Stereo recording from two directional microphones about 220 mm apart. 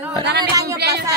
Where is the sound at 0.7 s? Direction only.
50° right (ahead or behind).